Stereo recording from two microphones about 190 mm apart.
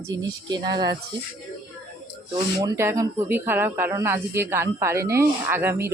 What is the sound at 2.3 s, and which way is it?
Speech, 25° right (ahead or behind).